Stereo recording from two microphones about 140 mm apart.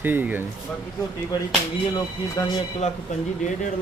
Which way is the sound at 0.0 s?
15° right (ahead or behind).